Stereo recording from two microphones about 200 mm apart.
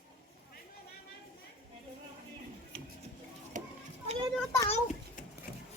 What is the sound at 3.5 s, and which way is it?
Children playing, 40° right (ahead or behind).